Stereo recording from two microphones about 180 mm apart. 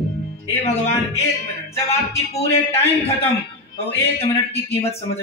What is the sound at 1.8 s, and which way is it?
Speech, 35° left (ahead or behind).